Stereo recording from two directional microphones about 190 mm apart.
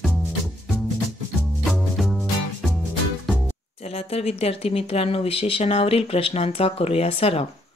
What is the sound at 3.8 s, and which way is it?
Speech, 30° left (ahead or behind).